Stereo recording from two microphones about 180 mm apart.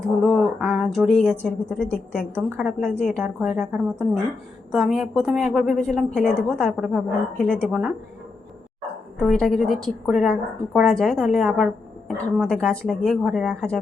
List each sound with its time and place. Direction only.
0.2 s a woman's voice: centre (ahead or behind)
2.1 s a woman's voice: 5° right (ahead or behind)
7.4 s speech: 5° left (ahead or behind)
7.7 s a woman's voice: 5° right (ahead or behind)
9.2 s a woman's voice: centre (ahead or behind)